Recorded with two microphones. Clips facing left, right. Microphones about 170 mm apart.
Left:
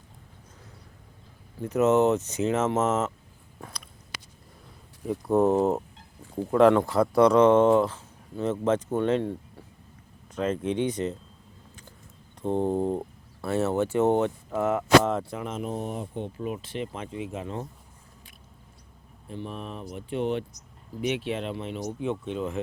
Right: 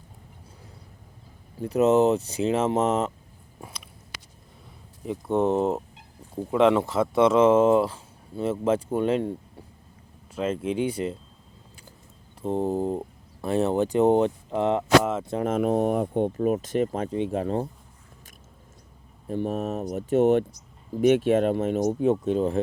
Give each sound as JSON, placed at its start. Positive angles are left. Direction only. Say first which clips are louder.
{"t": 1.9, "sound": "speech", "louder": "right 1 dB", "side_deg": -35}
{"t": 2.7, "sound": "speech", "louder": "right 2 dB", "side_deg": -15}
{"t": 5.0, "sound": "speech", "louder": "left 1 dB", "side_deg": 0}
{"t": 10.8, "sound": "speech", "louder": "right 1 dB", "side_deg": -10}
{"t": 12.4, "sound": "speech", "louder": "even", "side_deg": -5}
{"t": 13.4, "sound": "speech", "louder": "right 2 dB", "side_deg": -15}
{"t": 15.4, "sound": "speech", "louder": "right 9 dB", "side_deg": -55}
{"t": 19.3, "sound": "speech", "louder": "right 9 dB", "side_deg": -45}